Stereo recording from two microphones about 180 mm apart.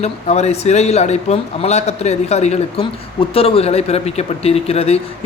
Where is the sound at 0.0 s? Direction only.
35° left (ahead or behind).